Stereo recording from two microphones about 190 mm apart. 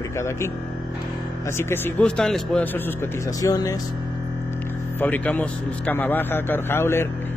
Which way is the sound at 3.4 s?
20° left (ahead or behind).